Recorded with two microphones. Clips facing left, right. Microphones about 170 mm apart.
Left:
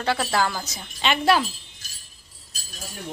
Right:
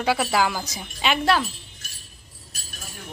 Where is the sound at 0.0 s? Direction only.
10° right (ahead or behind).